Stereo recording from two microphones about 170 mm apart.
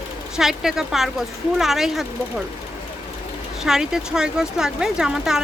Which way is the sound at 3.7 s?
5° right (ahead or behind).